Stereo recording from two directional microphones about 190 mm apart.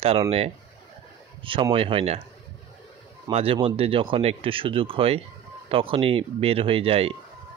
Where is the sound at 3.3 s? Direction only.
30° right (ahead or behind).